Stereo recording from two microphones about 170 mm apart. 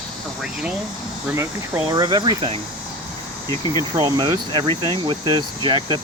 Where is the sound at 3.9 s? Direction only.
20° right (ahead or behind).